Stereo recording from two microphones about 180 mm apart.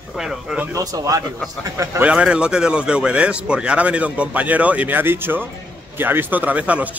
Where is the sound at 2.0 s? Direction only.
5° right (ahead or behind).